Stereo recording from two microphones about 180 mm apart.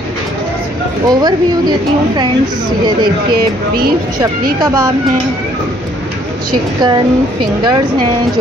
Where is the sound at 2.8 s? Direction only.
25° right (ahead or behind).